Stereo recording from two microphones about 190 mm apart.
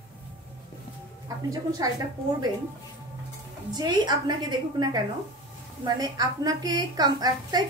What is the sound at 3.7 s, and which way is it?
A woman's voice, 20° right (ahead or behind).